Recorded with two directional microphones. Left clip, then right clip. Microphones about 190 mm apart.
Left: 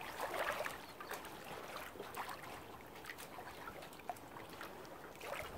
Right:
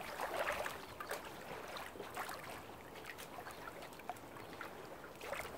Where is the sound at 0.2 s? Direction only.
20° left (ahead or behind).